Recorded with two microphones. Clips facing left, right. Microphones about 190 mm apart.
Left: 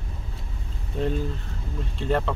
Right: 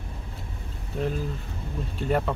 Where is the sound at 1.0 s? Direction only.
Centre (ahead or behind).